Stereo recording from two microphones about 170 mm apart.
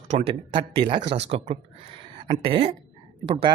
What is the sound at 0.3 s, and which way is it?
Speech, 30° right (ahead or behind).